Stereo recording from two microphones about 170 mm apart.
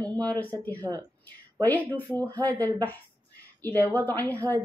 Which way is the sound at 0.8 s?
20° right (ahead or behind).